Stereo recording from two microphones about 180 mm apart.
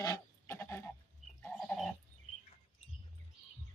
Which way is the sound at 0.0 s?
15° left (ahead or behind).